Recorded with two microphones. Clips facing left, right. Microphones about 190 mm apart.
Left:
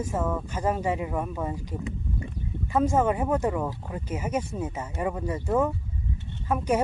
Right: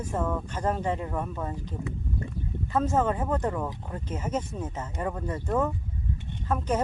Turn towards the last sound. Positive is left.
turn(degrees=10)  # may be behind; listen again after turning